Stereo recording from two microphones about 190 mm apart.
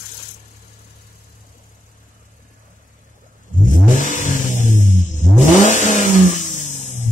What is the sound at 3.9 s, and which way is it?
Vehicle, 40° left (ahead or behind).